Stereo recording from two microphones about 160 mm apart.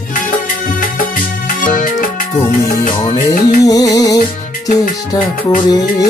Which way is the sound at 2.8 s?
40° left (ahead or behind).